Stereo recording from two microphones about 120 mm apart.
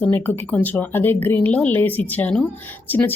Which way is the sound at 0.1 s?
15° left (ahead or behind).